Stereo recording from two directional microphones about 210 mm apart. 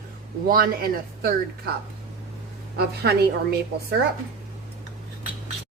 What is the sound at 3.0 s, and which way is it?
Speech, 50° right (ahead or behind).